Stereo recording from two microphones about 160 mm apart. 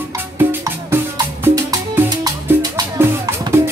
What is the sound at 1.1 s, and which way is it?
Music, 25° right (ahead or behind).